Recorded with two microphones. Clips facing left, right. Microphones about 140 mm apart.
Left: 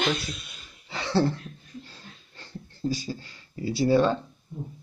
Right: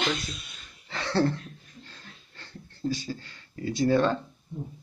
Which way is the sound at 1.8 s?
15° left (ahead or behind).